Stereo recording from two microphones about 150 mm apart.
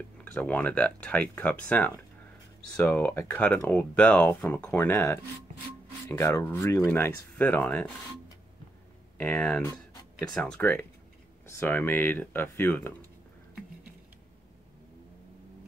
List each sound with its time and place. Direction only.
0.2 s speech: 10° left (ahead or behind)
9.2 s speech: 10° left (ahead or behind)